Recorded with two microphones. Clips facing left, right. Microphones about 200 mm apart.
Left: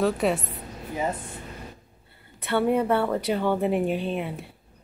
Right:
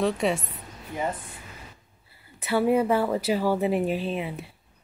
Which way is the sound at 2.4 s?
5° right (ahead or behind).